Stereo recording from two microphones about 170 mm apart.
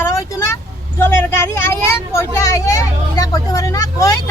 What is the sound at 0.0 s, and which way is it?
Vehicle, 20° left (ahead or behind).